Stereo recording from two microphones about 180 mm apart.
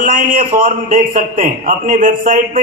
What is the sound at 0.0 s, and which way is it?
A man's voice, 45° right (ahead or behind).